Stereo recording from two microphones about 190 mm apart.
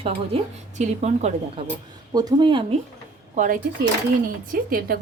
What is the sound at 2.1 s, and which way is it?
Speech, 20° right (ahead or behind).